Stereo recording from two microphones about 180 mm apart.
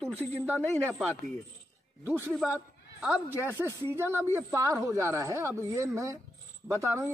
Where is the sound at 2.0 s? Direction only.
10° right (ahead or behind).